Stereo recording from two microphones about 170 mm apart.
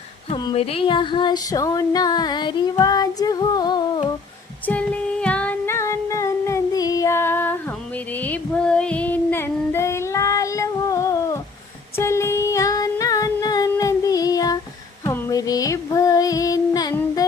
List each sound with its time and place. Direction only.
0.3 s a sound: 30° left (ahead or behind)
4.6 s female singing: 10° left (ahead or behind)
8.2 s child singing: 5° left (ahead or behind)
11.9 s singing: 15° left (ahead or behind)
15.0 s music: 20° left (ahead or behind)